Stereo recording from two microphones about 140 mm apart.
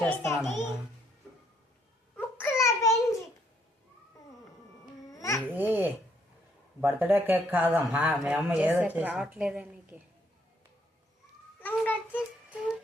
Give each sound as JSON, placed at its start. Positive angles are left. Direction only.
{"t": 0.0, "sound": "a child's voice", "side_deg": 0}
{"t": 2.1, "sound": "a sound", "side_deg": 15}
{"t": 5.1, "sound": "babbling", "side_deg": 20}
{"t": 5.5, "sound": "babbling", "side_deg": -10}
{"t": 6.8, "sound": "a woman's voice", "side_deg": -15}
{"t": 11.6, "sound": "a sound", "side_deg": 10}